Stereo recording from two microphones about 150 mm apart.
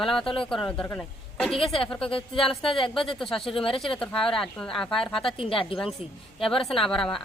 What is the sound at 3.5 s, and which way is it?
Speech, 35° left (ahead or behind).